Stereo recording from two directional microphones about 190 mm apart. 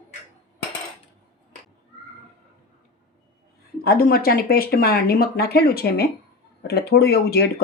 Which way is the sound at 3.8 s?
50° left (ahead or behind).